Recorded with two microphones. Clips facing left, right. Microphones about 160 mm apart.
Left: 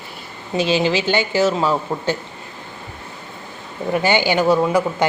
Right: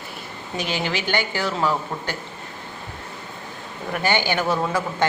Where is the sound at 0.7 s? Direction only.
15° left (ahead or behind).